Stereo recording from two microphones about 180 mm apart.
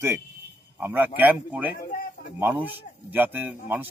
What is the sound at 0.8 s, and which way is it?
A man's voice, 10° right (ahead or behind).